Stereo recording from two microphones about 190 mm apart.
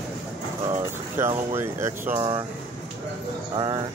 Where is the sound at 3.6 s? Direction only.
20° right (ahead or behind).